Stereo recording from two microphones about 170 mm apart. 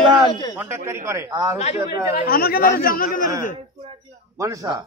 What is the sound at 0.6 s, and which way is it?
A man's voice, 15° right (ahead or behind).